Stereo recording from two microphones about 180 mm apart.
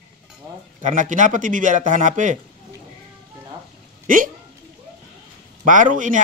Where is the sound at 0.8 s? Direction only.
45° right (ahead or behind).